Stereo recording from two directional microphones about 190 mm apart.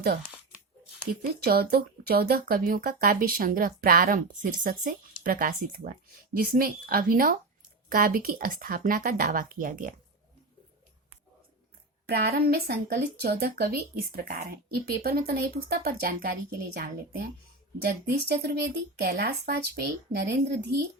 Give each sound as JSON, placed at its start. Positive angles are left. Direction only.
{"t": 1.2, "sound": "speech", "side_deg": -55}
{"t": 12.0, "sound": "speech", "side_deg": -55}